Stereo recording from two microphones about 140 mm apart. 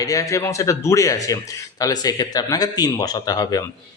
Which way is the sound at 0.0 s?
25° left (ahead or behind).